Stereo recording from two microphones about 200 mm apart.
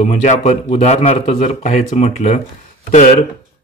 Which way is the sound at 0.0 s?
35° left (ahead or behind).